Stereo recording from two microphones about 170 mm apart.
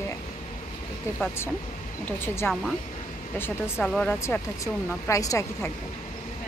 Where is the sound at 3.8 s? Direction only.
10° left (ahead or behind).